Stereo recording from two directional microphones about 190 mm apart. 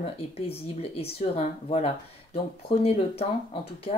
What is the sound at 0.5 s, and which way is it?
Speech, 30° left (ahead or behind).